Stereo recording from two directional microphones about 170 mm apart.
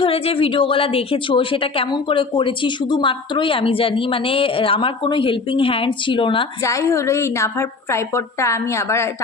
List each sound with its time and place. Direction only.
0.0 s a woman's voice: 35° left (ahead or behind)
6.6 s a woman's voice: 20° left (ahead or behind)